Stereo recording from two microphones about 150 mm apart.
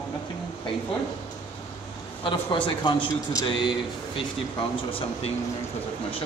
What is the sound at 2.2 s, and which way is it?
Speech, 30° left (ahead or behind).